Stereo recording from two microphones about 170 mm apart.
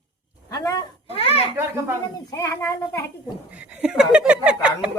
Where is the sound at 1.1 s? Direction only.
35° left (ahead or behind).